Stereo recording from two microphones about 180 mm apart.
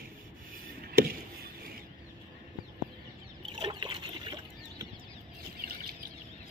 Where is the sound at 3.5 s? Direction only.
25° right (ahead or behind).